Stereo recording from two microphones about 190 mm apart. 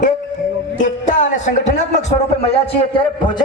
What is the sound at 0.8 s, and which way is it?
Speech, 40° left (ahead or behind).